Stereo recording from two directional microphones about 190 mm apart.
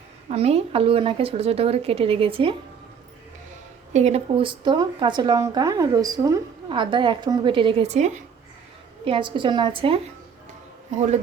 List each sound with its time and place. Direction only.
0.3 s speech: 35° right (ahead or behind)
3.9 s speech: 35° right (ahead or behind)
9.0 s speech: 25° right (ahead or behind)